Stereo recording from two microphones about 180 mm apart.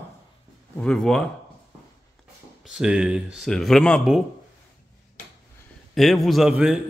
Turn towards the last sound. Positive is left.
turn(degrees=-5)  # may be behind; listen again after turning